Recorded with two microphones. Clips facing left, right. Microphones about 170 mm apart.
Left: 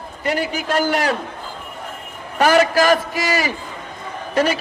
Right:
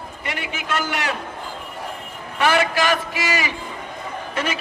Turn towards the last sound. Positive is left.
turn(degrees=40)  # may be behind; listen again after turning